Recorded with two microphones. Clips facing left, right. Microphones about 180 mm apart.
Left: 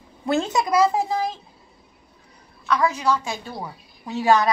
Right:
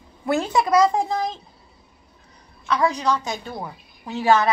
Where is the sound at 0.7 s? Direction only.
5° left (ahead or behind).